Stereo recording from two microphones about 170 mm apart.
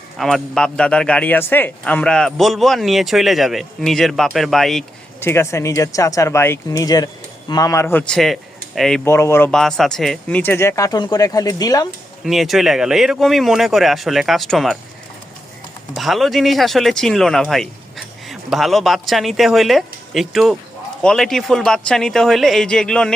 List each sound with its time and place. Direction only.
0.2 s speech: centre (ahead or behind)
5.2 s speech: 15° left (ahead or behind)
9.0 s speech: 15° left (ahead or behind)
12.2 s speech: centre (ahead or behind)
16.0 s speech: centre (ahead or behind)